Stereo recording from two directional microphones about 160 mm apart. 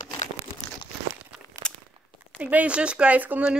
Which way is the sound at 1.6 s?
5° left (ahead or behind).